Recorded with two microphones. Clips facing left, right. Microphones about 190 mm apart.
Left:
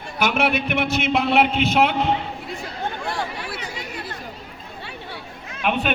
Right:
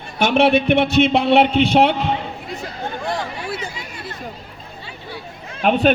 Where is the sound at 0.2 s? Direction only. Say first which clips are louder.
Right 6 dB; 30° right (ahead or behind).